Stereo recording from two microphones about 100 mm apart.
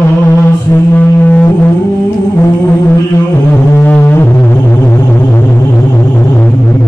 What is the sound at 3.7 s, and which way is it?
Music, 20° left (ahead or behind).